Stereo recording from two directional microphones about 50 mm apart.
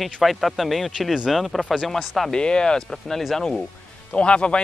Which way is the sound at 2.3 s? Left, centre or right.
Centre.